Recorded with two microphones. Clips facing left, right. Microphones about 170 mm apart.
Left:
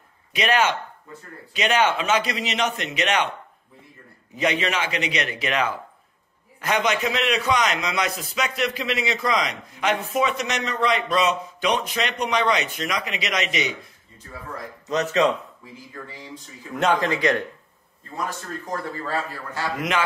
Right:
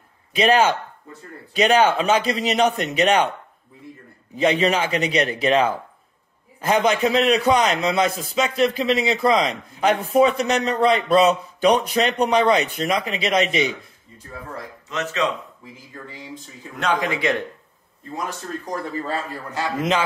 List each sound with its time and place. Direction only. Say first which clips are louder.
0.4 s a man's voice: right 4 dB; 30° right (ahead or behind)
4.4 s a man's voice: right 5 dB; 30° right (ahead or behind)
14.9 s speech: left 4 dB; 35° left (ahead or behind)
17.1 s a man's voice: left 1 dB; 25° right (ahead or behind)
18.7 s a man's voice: right 2 dB; 20° right (ahead or behind)